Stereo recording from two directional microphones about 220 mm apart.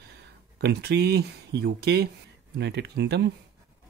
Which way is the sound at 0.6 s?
50° right (ahead or behind).